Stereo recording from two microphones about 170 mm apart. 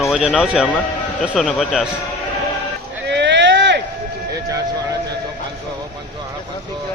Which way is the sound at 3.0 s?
90° right.